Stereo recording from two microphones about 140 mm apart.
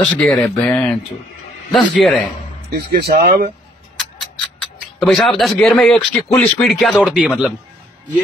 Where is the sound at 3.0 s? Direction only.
90° right.